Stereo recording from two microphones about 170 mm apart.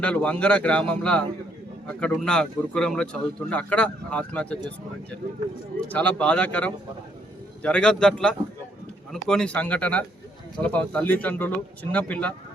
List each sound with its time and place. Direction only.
0.0 s a man's voice: 10° left (ahead or behind)
5.8 s a man's voice: 10° left (ahead or behind)